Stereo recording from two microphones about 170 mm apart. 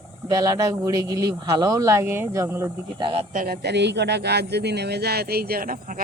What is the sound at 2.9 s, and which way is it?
Speech, 30° right (ahead or behind).